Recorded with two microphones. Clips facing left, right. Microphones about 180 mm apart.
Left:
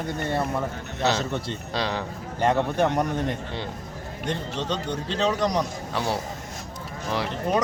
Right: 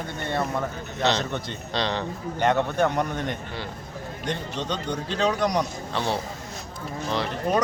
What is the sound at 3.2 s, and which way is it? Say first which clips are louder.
Speech: left 2 dB; 25° left (ahead or behind).